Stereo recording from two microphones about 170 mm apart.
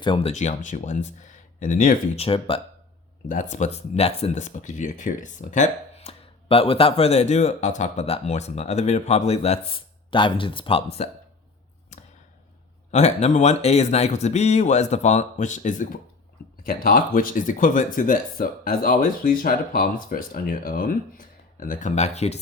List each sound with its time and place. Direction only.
0.0 s speech: 30° left (ahead or behind); by 2.2 s 50° left (ahead or behind)
2.2 s speech: 30° left (ahead or behind)
3.2 s speech: 45° left (ahead or behind)
11.9 s a sound: 45° left (ahead or behind)
12.9 s speech: 40° left (ahead or behind)